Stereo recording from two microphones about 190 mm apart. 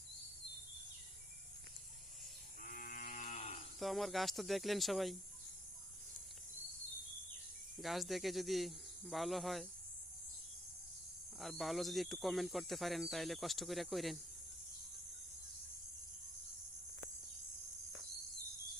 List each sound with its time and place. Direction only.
2.6 s moo: 45° left (ahead or behind)
3.8 s speech: centre (ahead or behind)
7.8 s speech: centre (ahead or behind)
11.3 s speech: centre (ahead or behind)